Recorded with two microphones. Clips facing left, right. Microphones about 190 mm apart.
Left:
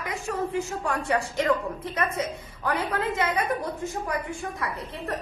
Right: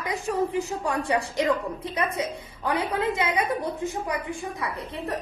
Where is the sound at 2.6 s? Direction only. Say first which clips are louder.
Right 2 dB; 15° right (ahead or behind).